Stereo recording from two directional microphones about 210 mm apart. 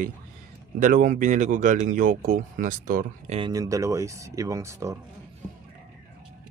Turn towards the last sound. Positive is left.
turn(degrees=-15)  # may be behind; listen again after turning